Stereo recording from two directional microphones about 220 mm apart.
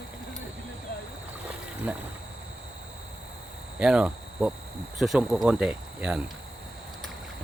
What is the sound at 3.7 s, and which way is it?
Cricket, 5° right (ahead or behind).